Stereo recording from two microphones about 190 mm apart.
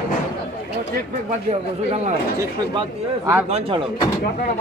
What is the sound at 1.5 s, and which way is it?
Speech, 35° right (ahead or behind).